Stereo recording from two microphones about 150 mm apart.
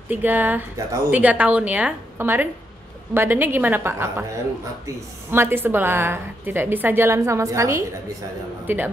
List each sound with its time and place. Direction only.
0.1 s a woman's voice: 10° right (ahead or behind)
5.3 s a woman's voice: 15° right (ahead or behind)